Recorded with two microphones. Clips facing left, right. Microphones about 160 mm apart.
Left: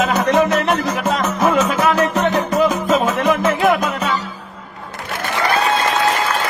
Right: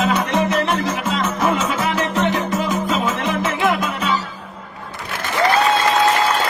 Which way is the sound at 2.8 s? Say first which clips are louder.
Left 5 dB; 45° left (ahead or behind).